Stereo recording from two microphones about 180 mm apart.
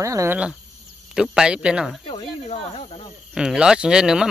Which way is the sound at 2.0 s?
30° left (ahead or behind).